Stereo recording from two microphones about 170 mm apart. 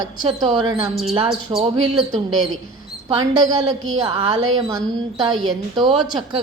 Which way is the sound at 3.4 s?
20° right (ahead or behind).